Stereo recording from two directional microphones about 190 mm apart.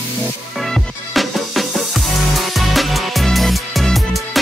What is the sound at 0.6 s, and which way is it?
Music, centre (ahead or behind).